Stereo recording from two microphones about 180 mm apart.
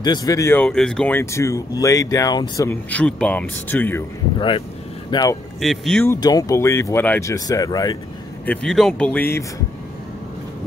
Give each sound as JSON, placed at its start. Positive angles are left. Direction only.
{"t": 0.0, "sound": "speech", "side_deg": 20}
{"t": 4.4, "sound": "speech", "side_deg": 30}
{"t": 5.6, "sound": "speech", "side_deg": 0}
{"t": 6.0, "sound": "speech", "side_deg": 20}
{"t": 8.5, "sound": "speech", "side_deg": 0}